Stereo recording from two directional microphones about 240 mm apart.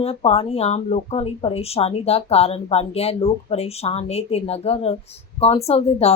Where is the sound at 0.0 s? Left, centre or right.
Left.